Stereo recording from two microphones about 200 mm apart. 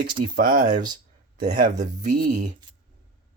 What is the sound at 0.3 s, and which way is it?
Speech, 45° right (ahead or behind).